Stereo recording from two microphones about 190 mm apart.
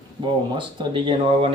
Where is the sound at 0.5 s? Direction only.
25° right (ahead or behind).